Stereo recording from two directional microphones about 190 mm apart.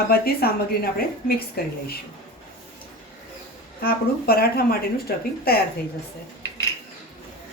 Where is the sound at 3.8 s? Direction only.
55° left (ahead or behind).